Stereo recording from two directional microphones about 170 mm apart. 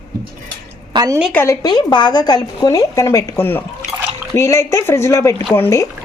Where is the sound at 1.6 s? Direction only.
25° left (ahead or behind).